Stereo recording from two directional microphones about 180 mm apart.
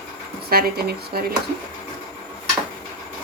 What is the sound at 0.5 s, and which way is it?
Speech, 60° right (ahead or behind).